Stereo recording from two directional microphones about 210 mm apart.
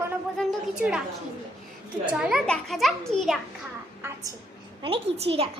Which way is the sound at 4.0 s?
10° right (ahead or behind).